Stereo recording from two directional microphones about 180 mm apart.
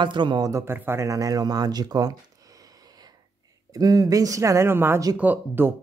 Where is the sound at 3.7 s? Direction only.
20° right (ahead or behind).